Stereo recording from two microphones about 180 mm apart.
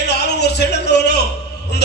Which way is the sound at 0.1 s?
70° left (ahead or behind).